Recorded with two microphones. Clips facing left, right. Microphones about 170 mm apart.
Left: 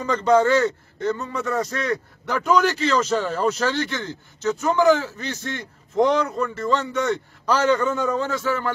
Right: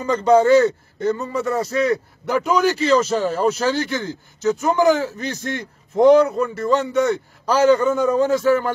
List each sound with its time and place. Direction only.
0.0 s a man's voice: 10° right (ahead or behind)